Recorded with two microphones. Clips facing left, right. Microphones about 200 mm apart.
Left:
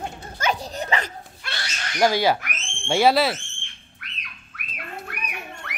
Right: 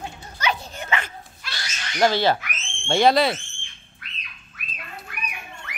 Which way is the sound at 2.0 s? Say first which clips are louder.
Even; 10° left (ahead or behind).